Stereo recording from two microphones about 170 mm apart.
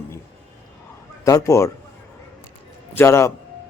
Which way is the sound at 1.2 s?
20° left (ahead or behind).